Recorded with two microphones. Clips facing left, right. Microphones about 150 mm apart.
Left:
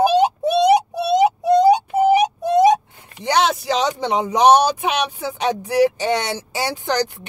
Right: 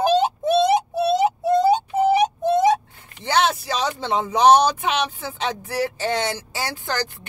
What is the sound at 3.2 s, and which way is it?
Speech, 15° left (ahead or behind).